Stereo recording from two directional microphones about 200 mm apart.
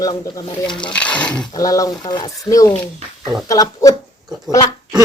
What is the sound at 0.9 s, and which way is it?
Speech, 5° left (ahead or behind).